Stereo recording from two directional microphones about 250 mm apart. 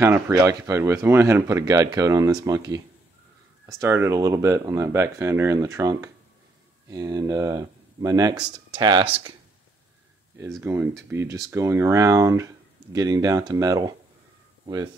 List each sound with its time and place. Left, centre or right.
0.0 s speech: centre
10.6 s speech: centre